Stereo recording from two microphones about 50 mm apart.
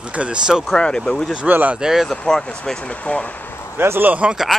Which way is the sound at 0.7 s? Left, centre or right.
Centre.